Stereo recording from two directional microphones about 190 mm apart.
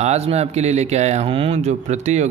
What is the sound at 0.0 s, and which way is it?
Speech, 35° right (ahead or behind).